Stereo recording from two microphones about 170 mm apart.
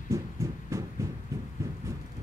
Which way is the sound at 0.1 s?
20° right (ahead or behind).